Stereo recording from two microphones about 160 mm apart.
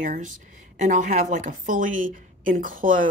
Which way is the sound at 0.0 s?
60° right (ahead or behind).